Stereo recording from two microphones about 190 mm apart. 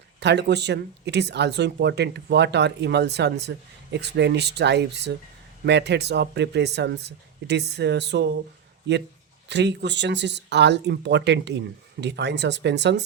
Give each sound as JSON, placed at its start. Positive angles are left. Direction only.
{"t": 0.2, "sound": "speech", "side_deg": -65}